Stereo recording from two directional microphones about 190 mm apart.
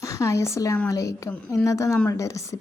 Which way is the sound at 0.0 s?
15° left (ahead or behind).